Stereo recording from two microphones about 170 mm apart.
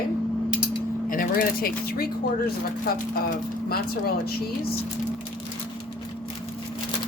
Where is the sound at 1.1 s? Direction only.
55° left (ahead or behind).